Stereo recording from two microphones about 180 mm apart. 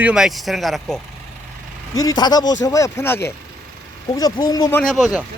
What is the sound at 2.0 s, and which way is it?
Speech, 20° left (ahead or behind).